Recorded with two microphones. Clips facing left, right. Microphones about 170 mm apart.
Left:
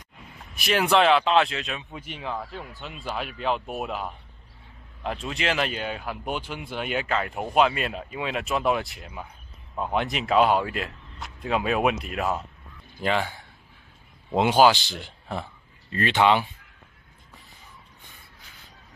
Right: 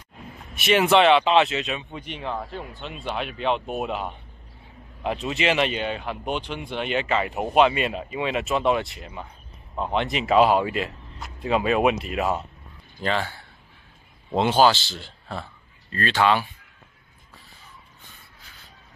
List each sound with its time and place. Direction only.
0.6 s speech: centre (ahead or behind)
13.0 s a man's voice: 15° left (ahead or behind)